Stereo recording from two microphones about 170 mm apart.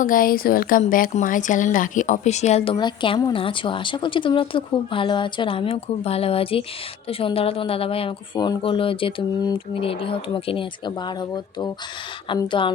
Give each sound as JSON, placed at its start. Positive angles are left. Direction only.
{"t": 0.0, "sound": "speech", "side_deg": 55}
{"t": 2.7, "sound": "speech", "side_deg": 25}